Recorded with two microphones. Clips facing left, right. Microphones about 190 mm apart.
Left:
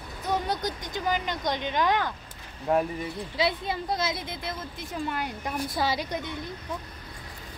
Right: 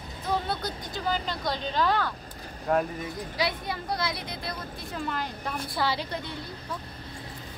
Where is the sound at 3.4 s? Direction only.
25° left (ahead or behind).